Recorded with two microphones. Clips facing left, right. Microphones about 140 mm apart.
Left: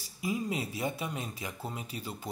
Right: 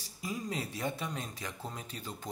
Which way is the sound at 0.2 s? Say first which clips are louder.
Left 4 dB; 10° left (ahead or behind).